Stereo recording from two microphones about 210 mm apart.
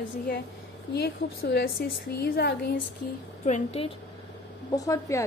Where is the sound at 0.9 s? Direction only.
50° left (ahead or behind).